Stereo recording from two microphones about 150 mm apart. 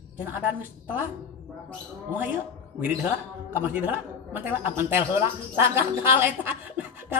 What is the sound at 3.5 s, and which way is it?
A woman's voice, 10° right (ahead or behind).